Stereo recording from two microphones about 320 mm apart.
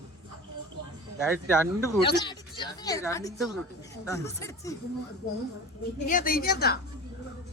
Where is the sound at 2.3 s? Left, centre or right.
Centre.